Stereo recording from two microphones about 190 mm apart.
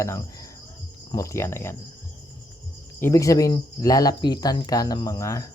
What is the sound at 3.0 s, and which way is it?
Speech, 15° left (ahead or behind).